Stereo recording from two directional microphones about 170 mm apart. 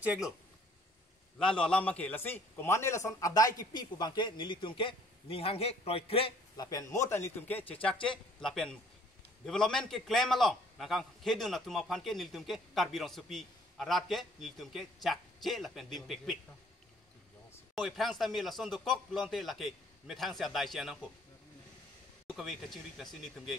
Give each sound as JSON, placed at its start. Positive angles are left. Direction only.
{"t": 0.0, "sound": "speech", "side_deg": -10}
{"t": 1.4, "sound": "a man's voice", "side_deg": 5}
{"t": 6.5, "sound": "a man's voice", "side_deg": 20}
{"t": 17.7, "sound": "a man's voice", "side_deg": 0}
{"t": 22.4, "sound": "a man's voice", "side_deg": 0}